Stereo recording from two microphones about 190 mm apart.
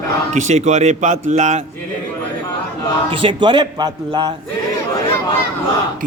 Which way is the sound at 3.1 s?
25° right (ahead or behind).